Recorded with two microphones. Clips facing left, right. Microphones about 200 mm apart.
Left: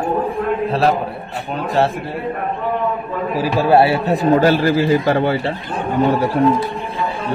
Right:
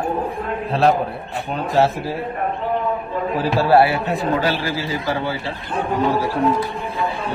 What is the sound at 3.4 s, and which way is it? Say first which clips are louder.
Speech: left 2 dB; 20° left (ahead or behind).